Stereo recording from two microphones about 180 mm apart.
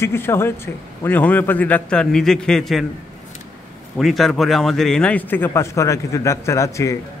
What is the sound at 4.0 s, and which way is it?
A man's voice, centre (ahead or behind).